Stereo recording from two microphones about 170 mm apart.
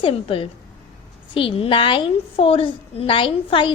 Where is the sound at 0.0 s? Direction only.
35° left (ahead or behind).